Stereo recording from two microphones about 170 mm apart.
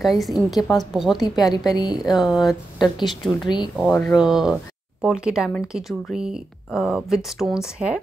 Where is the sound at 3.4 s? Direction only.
25° left (ahead or behind).